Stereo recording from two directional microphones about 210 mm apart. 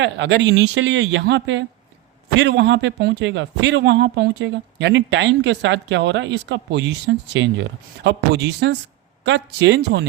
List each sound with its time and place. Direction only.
0.0 s a man's voice: 60° right (ahead or behind)